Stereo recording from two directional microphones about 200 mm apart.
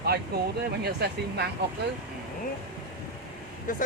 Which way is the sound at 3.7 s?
40° left (ahead or behind).